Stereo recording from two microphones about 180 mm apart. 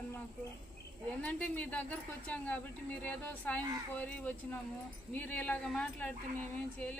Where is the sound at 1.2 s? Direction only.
5° left (ahead or behind).